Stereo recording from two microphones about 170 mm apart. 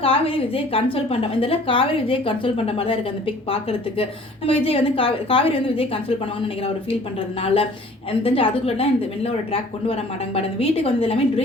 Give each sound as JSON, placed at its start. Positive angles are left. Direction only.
{"t": 0.0, "sound": "a woman's voice", "side_deg": 35}
{"t": 7.4, "sound": "a woman's voice", "side_deg": 35}